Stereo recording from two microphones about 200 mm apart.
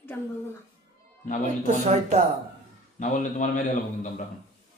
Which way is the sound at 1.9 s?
35° right (ahead or behind).